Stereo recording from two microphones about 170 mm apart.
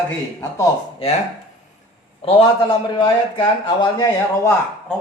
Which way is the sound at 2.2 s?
30° left (ahead or behind).